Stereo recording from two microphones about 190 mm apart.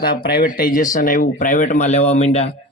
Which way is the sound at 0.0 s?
55° left (ahead or behind).